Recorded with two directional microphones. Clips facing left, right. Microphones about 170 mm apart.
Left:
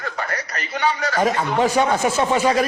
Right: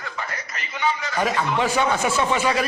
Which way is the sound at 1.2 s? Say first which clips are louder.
Left 3 dB; 40° left (ahead or behind).